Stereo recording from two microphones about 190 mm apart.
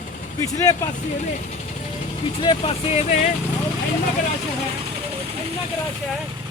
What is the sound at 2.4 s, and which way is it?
Speech, 30° left (ahead or behind).